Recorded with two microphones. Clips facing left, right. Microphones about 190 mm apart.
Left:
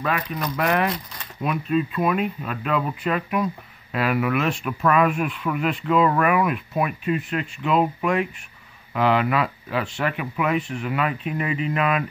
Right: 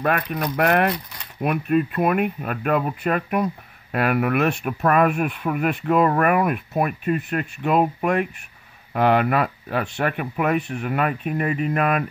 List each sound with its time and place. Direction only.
0.0 s speech: 55° right (ahead or behind)